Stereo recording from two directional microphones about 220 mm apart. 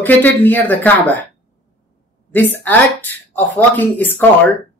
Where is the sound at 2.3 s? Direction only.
10° left (ahead or behind).